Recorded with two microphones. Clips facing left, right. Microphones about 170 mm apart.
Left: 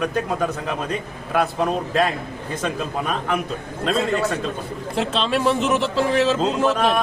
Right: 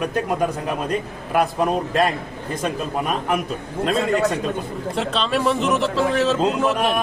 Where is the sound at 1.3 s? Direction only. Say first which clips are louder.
Right 1 dB; 10° right (ahead or behind).